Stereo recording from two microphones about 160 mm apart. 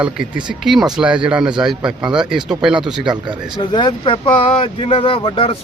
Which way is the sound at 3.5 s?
30° left (ahead or behind).